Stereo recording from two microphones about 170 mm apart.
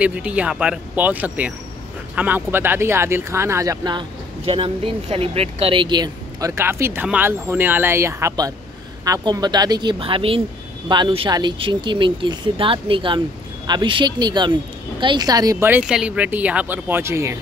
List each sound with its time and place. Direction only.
0.0 s speech: 5° right (ahead or behind)
15.7 s speech: 5° right (ahead or behind)